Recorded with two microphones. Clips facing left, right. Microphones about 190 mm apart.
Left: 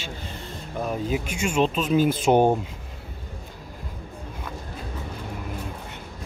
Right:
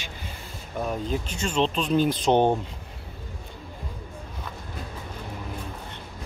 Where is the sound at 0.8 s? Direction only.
5° left (ahead or behind).